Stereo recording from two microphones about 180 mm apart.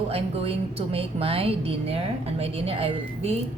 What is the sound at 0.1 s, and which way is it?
A woman's voice, 30° right (ahead or behind).